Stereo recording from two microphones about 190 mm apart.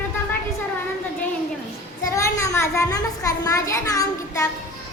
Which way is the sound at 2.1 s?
15° left (ahead or behind).